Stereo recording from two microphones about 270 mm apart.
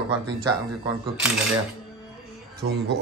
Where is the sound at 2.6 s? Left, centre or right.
Right.